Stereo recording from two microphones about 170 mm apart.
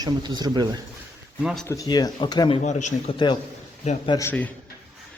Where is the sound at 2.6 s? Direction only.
45° left (ahead or behind).